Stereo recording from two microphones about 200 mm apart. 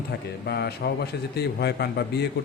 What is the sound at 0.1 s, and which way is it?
A man's voice, 55° left (ahead or behind).